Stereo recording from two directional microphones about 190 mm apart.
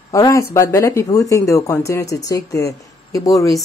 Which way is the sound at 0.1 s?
15° left (ahead or behind).